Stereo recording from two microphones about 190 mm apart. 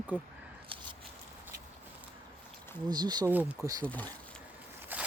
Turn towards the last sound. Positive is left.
turn(degrees=-10)  # may be behind; listen again after turning